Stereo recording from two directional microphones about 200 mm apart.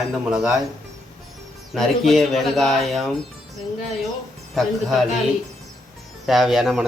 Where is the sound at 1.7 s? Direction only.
Centre (ahead or behind).